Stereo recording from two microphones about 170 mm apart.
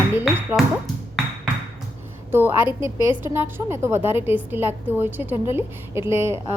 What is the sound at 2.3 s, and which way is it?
Speech, 10° right (ahead or behind).